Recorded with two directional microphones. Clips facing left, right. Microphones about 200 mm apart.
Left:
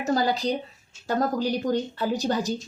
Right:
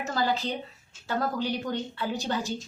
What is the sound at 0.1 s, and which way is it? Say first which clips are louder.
Speech: left 5 dB; 40° left (ahead or behind).